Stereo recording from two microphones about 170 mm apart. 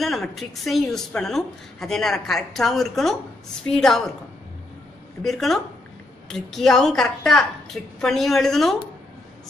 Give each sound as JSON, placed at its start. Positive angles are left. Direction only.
{"t": 0.0, "sound": "a woman's voice", "side_deg": 0}
{"t": 5.2, "sound": "a woman's voice", "side_deg": 0}